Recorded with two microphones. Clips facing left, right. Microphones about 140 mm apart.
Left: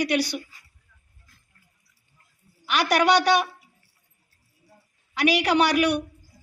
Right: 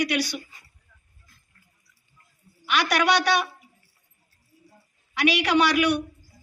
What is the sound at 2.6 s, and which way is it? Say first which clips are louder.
Speech: left 2 dB; 35° left (ahead or behind).